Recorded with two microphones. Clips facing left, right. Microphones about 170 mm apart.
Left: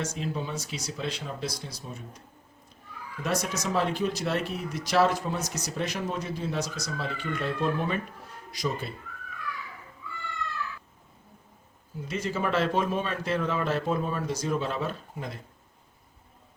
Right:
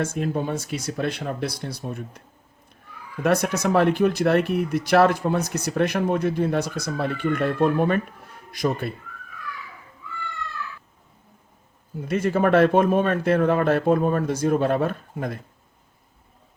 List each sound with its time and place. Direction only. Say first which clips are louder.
0.0 s speech: right 7 dB; 55° right (ahead or behind)
3.2 s speech: right 9 dB; 60° right (ahead or behind)
11.9 s speech: right 9 dB; 55° right (ahead or behind)